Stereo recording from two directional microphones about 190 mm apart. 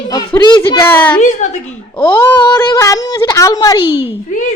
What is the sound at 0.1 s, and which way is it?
Speech, 25° left (ahead or behind).